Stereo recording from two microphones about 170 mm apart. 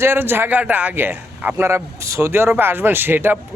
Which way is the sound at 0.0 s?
15° right (ahead or behind).